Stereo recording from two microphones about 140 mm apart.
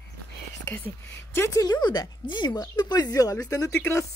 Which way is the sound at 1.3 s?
20° left (ahead or behind).